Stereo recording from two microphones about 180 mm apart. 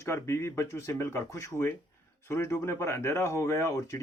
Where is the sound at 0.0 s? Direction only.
15° left (ahead or behind).